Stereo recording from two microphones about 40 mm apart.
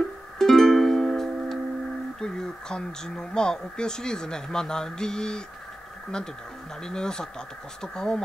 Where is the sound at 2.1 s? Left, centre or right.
Centre.